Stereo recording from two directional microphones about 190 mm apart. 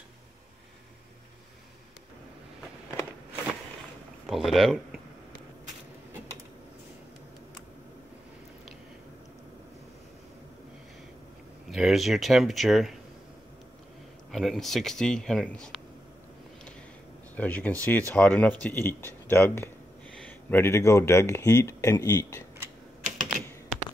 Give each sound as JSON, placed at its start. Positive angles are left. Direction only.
{"t": 4.3, "sound": "speech", "side_deg": 0}
{"t": 11.7, "sound": "speech", "side_deg": 0}
{"t": 14.3, "sound": "speech", "side_deg": 0}
{"t": 17.4, "sound": "speech", "side_deg": 10}
{"t": 23.0, "sound": "typing", "side_deg": -40}